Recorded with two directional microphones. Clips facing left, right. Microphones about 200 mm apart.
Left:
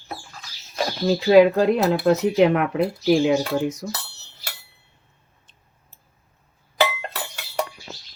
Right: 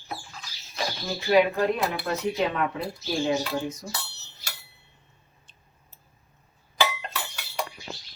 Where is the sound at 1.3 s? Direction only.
80° left.